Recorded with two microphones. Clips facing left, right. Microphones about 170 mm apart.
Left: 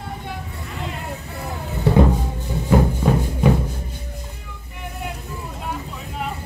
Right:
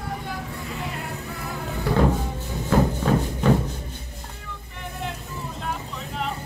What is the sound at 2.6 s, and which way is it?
Music, 10° left (ahead or behind).